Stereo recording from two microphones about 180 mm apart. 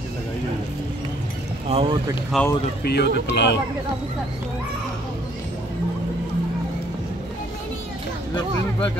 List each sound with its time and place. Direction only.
1.7 s speech: 30° right (ahead or behind)
2.3 s speech: centre (ahead or behind)
2.8 s speech: 65° left (ahead or behind)